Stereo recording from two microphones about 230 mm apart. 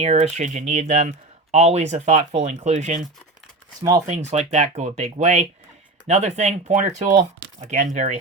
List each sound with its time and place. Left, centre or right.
0.0 s speech: right